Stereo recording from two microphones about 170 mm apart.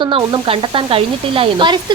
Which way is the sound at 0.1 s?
30° right (ahead or behind).